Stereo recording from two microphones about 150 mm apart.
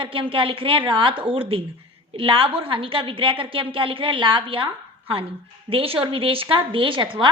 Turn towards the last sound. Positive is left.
turn(degrees=-35)  # may be behind; listen again after turning